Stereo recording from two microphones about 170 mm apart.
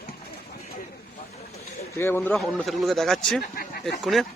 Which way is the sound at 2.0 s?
15° left (ahead or behind).